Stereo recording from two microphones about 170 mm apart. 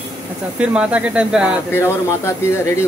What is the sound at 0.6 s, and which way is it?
Speech, 5° right (ahead or behind).